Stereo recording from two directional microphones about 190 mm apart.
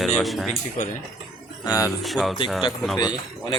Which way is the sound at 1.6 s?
20° left (ahead or behind).